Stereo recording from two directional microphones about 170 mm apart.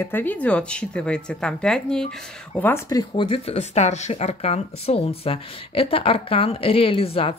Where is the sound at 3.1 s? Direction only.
30° left (ahead or behind).